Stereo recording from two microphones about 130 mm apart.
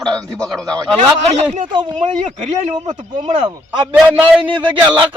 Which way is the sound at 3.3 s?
40° right (ahead or behind).